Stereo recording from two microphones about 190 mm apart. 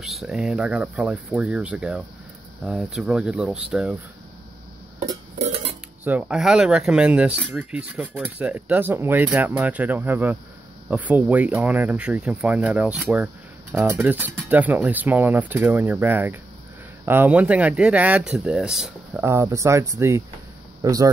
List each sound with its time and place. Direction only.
0.0 s speech: centre (ahead or behind)
6.0 s speech: 5° right (ahead or behind)
19.1 s speech: 15° right (ahead or behind)